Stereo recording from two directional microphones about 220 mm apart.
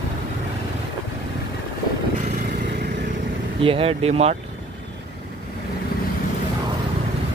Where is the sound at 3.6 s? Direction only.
25° right (ahead or behind).